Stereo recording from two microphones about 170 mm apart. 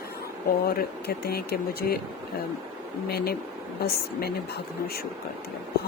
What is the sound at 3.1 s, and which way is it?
A woman's voice, 65° left (ahead or behind).